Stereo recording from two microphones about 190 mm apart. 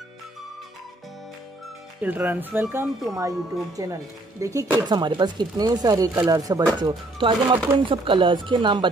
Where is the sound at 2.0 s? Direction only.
10° right (ahead or behind).